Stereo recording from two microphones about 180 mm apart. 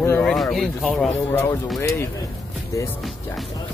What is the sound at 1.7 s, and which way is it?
Speech, 15° left (ahead or behind).